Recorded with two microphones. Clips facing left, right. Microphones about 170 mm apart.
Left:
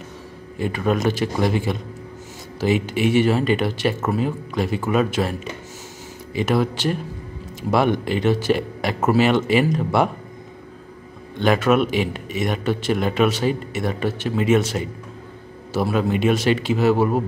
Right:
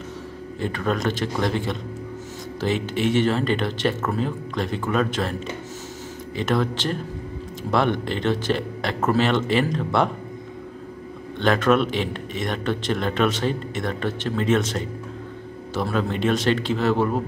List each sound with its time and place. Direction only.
0.6 s a man's voice: 10° left (ahead or behind)
11.3 s a man's voice: 10° left (ahead or behind)